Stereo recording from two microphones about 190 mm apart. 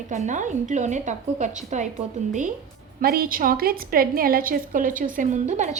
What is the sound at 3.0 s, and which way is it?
A woman's voice, 50° right (ahead or behind).